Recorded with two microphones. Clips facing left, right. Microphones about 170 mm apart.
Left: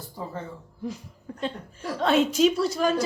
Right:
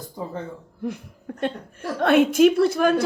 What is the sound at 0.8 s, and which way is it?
A woman's voice, 60° right (ahead or behind).